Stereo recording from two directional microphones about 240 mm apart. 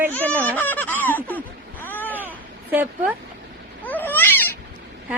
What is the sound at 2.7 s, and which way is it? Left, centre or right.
Speech, centre.